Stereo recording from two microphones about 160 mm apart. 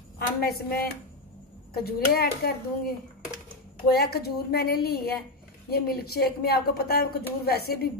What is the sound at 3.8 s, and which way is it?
A woman's voice, 80° left.